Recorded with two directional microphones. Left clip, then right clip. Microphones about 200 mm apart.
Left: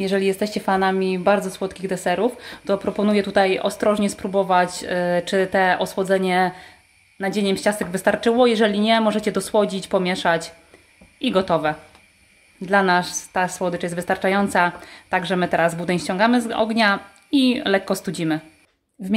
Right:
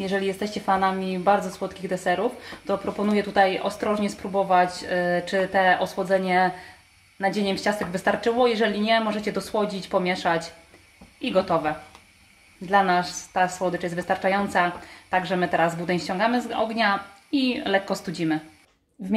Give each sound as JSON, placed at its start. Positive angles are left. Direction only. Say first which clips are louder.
{"t": 0.0, "sound": "a woman's voice", "louder": "left 5 dB", "side_deg": 55}